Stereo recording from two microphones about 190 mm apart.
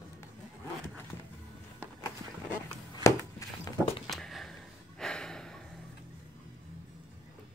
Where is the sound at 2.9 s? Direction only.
15° left (ahead or behind).